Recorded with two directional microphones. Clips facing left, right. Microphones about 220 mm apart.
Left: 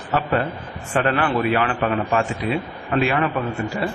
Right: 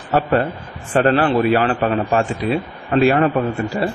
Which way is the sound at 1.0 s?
35° right (ahead or behind).